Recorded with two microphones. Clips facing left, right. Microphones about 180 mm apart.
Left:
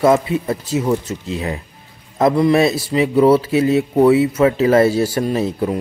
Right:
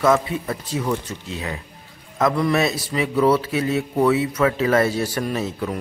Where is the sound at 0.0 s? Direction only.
30° left (ahead or behind).